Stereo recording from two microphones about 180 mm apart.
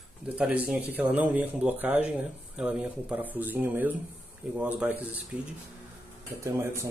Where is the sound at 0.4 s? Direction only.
5° right (ahead or behind).